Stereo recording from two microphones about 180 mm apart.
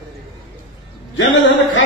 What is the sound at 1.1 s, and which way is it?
Speech, 90° left.